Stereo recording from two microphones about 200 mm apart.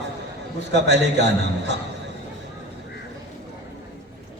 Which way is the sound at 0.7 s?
60° right (ahead or behind).